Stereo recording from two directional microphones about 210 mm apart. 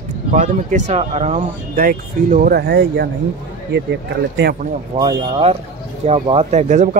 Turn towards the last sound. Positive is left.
turn(degrees=-35)  # may be behind; listen again after turning